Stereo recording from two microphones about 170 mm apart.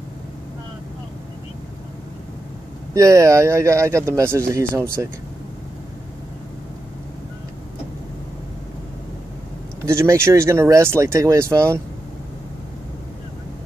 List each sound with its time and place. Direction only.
2.9 s speech: 20° right (ahead or behind)
9.8 s speech: 15° right (ahead or behind)